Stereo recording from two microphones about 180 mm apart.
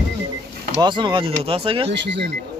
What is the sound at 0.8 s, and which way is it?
Speech, 25° right (ahead or behind).